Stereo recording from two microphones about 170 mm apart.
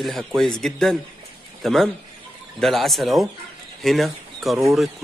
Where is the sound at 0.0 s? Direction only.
Centre (ahead or behind).